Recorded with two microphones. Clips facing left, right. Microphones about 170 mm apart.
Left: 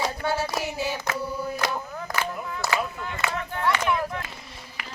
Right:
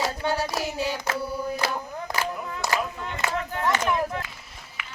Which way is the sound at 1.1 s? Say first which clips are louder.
Right 1 dB; centre (ahead or behind).